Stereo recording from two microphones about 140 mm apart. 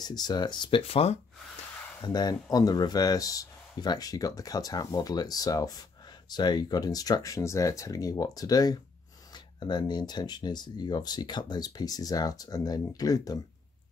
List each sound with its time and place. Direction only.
0.0 s speech: 30° left (ahead or behind)
2.0 s speech: 30° left (ahead or behind)